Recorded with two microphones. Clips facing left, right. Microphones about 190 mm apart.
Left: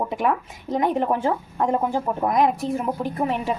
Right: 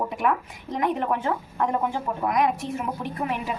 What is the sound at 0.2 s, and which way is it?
A woman's voice, 25° left (ahead or behind).